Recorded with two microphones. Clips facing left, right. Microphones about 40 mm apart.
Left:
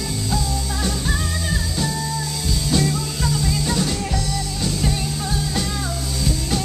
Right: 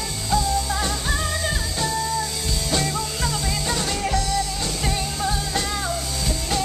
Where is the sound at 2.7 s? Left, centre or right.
Centre.